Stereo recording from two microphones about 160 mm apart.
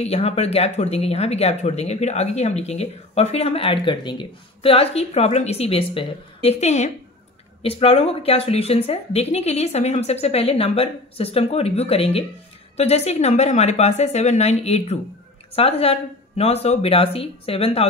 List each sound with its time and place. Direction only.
0.0 s a woman's voice: 40° left (ahead or behind)